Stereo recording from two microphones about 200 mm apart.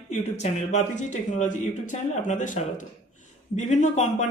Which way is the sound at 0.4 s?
35° left (ahead or behind).